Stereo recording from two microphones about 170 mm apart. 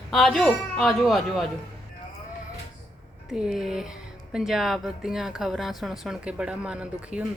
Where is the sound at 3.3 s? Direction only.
5° right (ahead or behind).